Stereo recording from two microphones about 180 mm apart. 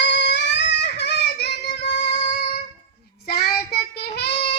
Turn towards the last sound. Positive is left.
turn(degrees=65)  # may be behind; listen again after turning